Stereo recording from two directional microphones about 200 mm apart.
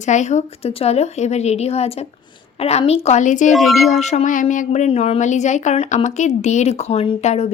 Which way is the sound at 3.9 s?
35° left (ahead or behind).